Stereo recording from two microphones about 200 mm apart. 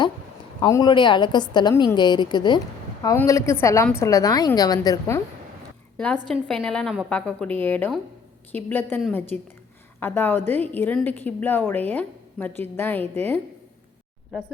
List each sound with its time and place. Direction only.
0.6 s a woman's voice: 20° left (ahead or behind)
6.2 s a woman's voice: centre (ahead or behind)